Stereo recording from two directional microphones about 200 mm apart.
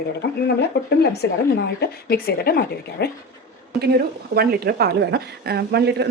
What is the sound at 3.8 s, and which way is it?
A woman's voice, 50° right (ahead or behind).